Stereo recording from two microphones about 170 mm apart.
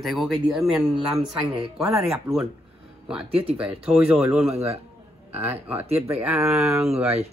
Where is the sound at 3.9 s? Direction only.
10° right (ahead or behind).